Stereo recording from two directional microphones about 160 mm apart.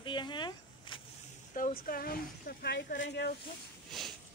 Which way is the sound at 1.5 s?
60° left (ahead or behind).